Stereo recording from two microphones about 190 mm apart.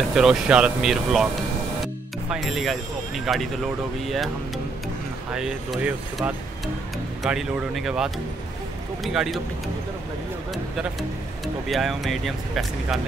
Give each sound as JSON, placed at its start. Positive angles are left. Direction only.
{"t": 0.1, "sound": "speech", "side_deg": -5}
{"t": 2.2, "sound": "speech", "side_deg": 0}
{"t": 5.3, "sound": "speech", "side_deg": -5}
{"t": 10.5, "sound": "speech", "side_deg": 0}